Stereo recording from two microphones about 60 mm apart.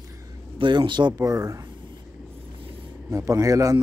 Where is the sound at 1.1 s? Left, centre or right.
Right.